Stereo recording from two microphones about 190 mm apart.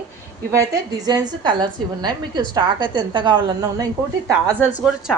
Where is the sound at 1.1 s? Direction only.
20° right (ahead or behind).